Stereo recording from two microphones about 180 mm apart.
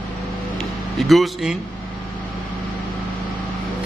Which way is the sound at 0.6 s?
Centre (ahead or behind).